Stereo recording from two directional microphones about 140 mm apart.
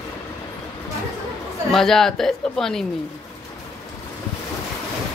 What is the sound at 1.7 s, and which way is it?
Speech, 5° left (ahead or behind).